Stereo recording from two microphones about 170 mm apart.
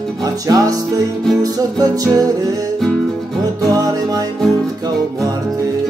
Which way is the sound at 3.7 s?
20° right (ahead or behind).